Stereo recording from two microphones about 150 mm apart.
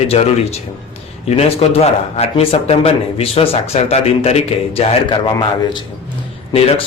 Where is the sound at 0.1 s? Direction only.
45° left (ahead or behind).